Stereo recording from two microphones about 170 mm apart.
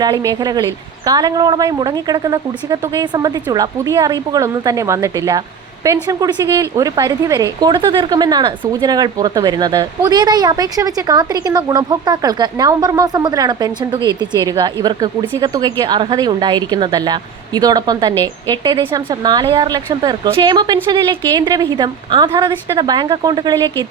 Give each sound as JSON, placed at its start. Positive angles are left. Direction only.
{"t": 0.0, "sound": "a woman's voice", "side_deg": -20}